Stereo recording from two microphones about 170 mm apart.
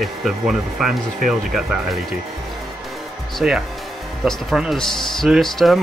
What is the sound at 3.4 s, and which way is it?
Speech, 5° right (ahead or behind).